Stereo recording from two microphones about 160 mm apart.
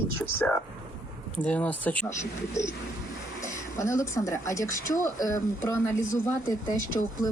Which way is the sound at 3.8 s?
20° left (ahead or behind).